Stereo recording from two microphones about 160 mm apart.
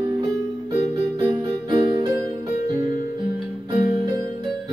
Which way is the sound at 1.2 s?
30° right (ahead or behind).